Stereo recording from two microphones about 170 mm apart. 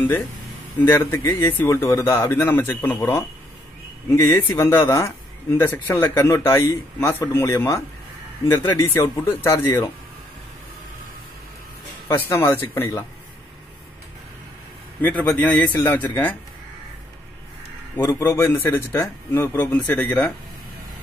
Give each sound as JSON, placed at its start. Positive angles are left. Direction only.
{"t": 0.7, "sound": "speech", "side_deg": 15}
{"t": 12.1, "sound": "speech", "side_deg": 15}
{"t": 15.0, "sound": "a man's voice", "side_deg": 10}
{"t": 17.9, "sound": "speech", "side_deg": 15}